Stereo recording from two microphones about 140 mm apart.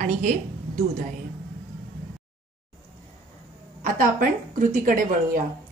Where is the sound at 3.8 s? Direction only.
75° right (ahead or behind).